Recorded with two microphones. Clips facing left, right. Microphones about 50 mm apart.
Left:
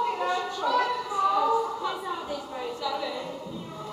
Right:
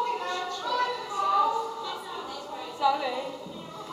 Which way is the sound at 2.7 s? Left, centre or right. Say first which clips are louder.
Right 8 dB; centre.